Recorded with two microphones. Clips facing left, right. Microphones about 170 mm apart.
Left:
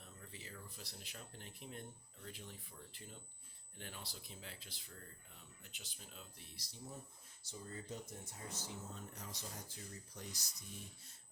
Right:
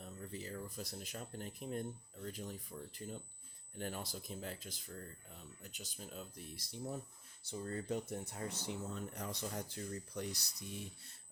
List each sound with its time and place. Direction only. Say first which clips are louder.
0.0 s speech: right 9 dB; 40° right (ahead or behind)
7.4 s speech: right 9 dB; 65° right (ahead or behind)